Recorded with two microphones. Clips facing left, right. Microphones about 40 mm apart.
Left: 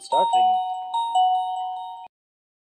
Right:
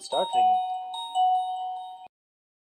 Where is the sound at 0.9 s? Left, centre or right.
Left.